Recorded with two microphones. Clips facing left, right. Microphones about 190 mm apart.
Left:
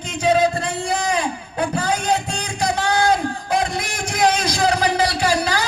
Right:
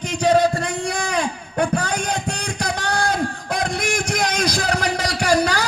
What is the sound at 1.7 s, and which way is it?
Music, 65° right (ahead or behind).